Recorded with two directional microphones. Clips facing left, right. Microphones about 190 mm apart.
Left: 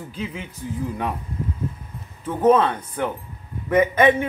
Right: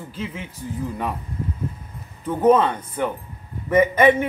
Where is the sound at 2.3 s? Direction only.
10° right (ahead or behind).